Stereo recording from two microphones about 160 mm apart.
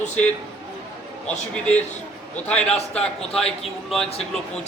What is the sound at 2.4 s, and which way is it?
A man's voice, 5° left (ahead or behind).